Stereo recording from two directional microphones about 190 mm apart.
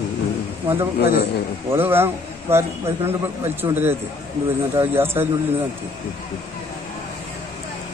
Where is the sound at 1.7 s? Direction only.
10° right (ahead or behind).